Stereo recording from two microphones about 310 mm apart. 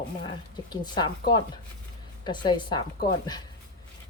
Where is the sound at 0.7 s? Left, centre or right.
Centre.